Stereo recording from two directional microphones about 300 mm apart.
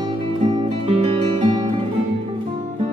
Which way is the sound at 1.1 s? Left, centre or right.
Centre.